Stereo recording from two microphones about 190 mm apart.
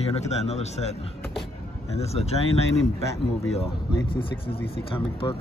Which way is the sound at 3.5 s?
30° left (ahead or behind).